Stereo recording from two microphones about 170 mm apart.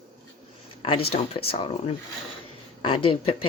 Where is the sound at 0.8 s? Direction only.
30° left (ahead or behind).